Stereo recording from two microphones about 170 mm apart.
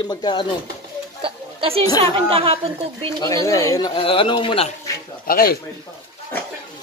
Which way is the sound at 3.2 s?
20° left (ahead or behind).